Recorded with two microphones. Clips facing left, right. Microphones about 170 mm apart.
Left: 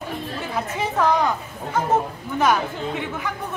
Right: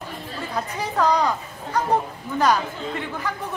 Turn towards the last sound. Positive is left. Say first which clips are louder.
# left 1 dB
turn(degrees=0)  # may be behind; listen again after turning